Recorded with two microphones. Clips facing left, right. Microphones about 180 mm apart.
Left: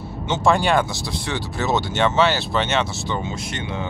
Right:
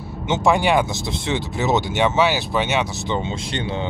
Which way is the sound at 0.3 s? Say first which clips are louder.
Right 1 dB; 15° right (ahead or behind).